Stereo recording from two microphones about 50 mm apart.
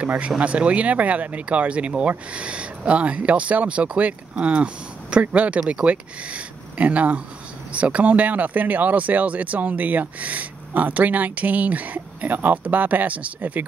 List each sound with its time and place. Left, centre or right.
0.4 s speech: right